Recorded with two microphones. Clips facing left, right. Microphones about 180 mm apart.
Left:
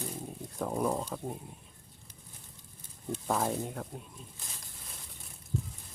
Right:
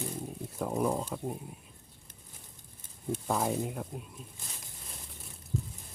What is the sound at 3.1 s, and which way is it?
Speech, 5° right (ahead or behind).